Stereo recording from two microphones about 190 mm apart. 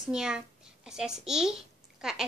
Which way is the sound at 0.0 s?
5° right (ahead or behind).